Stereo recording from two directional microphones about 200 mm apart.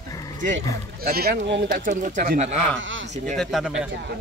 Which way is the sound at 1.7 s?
40° right (ahead or behind).